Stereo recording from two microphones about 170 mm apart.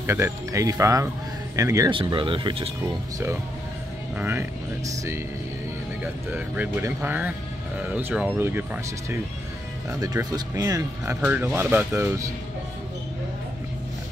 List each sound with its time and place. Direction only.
0.0 s speech: 15° right (ahead or behind)
2.0 s speech: 30° right (ahead or behind)
2.8 s speech: 15° right (ahead or behind)
6.3 s speech: 10° right (ahead or behind)
9.8 s speech: 20° right (ahead or behind)